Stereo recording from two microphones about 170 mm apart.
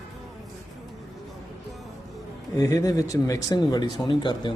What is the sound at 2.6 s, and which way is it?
Speech, 20° left (ahead or behind).